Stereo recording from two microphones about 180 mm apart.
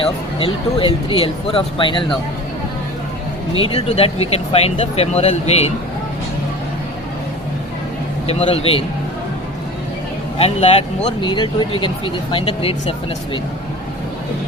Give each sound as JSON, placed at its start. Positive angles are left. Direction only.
{"t": 0.0, "sound": "speech", "side_deg": 30}
{"t": 3.5, "sound": "speech", "side_deg": 30}
{"t": 8.3, "sound": "speech", "side_deg": 30}
{"t": 10.3, "sound": "speech", "side_deg": 35}